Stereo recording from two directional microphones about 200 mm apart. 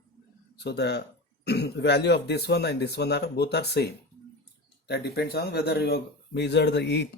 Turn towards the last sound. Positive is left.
turn(degrees=55)  # may be behind; listen again after turning